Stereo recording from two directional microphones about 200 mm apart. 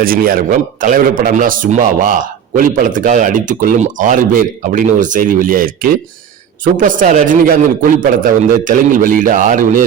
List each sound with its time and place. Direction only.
0.0 s a man's voice: 45° right (ahead or behind)